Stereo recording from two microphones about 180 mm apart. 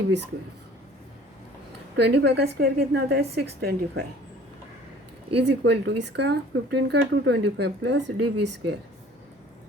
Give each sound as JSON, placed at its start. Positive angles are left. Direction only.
{"t": 2.0, "sound": "a woman's voice", "side_deg": -70}
{"t": 5.4, "sound": "speech", "side_deg": -75}